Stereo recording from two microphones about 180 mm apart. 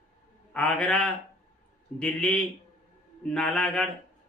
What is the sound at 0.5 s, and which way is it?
Speech, 5° left (ahead or behind).